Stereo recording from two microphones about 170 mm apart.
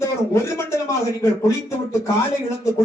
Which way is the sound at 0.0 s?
15° left (ahead or behind).